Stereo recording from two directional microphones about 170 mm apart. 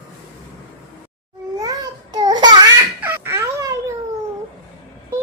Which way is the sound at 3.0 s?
15° right (ahead or behind).